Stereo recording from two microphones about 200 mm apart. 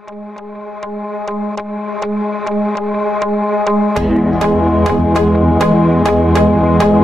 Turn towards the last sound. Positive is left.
turn(degrees=0)  # may be behind; listen again after turning